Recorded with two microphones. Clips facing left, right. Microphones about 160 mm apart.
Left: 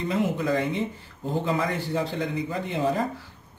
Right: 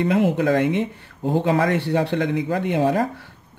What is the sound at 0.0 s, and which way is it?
A man's voice, 70° right (ahead or behind).